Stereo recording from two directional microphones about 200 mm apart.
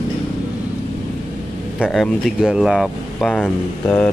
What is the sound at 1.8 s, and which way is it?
Speech, centre (ahead or behind).